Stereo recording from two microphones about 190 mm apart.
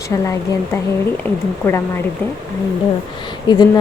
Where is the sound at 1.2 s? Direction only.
15° left (ahead or behind).